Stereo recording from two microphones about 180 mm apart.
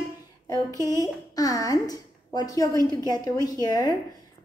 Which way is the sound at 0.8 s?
20° left (ahead or behind).